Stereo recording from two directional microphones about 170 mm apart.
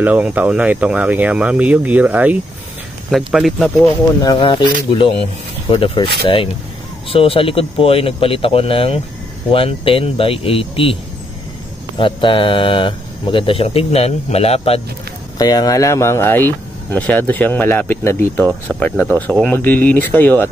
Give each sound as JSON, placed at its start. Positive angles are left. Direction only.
{"t": 0.0, "sound": "speech", "side_deg": -10}
{"t": 4.2, "sound": "speech", "side_deg": 25}
{"t": 12.0, "sound": "speech", "side_deg": 30}
{"t": 15.3, "sound": "speech", "side_deg": 20}